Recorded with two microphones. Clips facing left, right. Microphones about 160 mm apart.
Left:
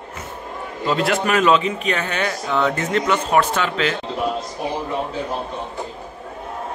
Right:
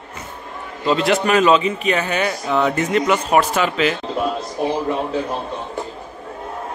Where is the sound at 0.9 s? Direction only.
Centre (ahead or behind).